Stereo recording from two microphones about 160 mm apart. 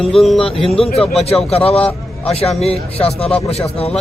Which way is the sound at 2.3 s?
40° left (ahead or behind).